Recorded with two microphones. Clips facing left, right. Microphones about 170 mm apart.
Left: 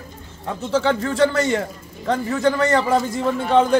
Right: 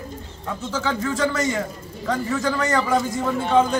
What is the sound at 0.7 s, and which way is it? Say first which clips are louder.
A man's voice: left 5 dB; 30° left (ahead or behind).